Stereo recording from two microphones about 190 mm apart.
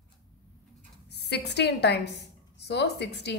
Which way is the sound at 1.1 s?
60° left (ahead or behind).